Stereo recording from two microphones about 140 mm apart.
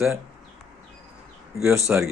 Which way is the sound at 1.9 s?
10° right (ahead or behind).